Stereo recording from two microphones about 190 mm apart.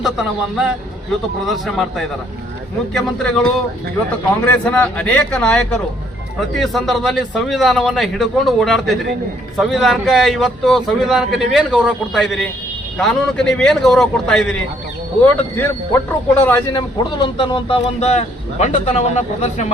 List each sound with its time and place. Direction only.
0.0 s a man's voice: centre (ahead or behind)
2.9 s a man's voice: centre (ahead or behind)
4.4 s a man's voice: 5° left (ahead or behind); by 19.7 s 35° left (ahead or behind)